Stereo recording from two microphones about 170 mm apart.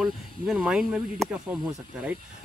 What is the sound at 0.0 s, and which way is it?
Speech, centre (ahead or behind).